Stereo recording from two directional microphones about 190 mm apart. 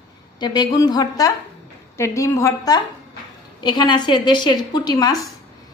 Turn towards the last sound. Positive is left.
turn(degrees=20)  # may be behind; listen again after turning